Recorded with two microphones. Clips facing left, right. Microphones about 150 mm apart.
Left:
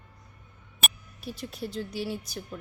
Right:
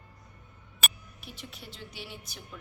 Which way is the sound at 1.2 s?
40° left (ahead or behind).